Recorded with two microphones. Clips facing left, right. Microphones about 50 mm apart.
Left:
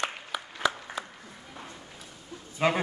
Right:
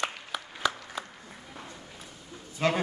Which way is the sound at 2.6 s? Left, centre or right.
Centre.